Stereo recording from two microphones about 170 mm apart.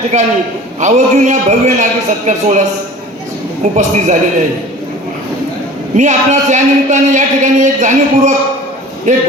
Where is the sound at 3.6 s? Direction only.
45° right (ahead or behind).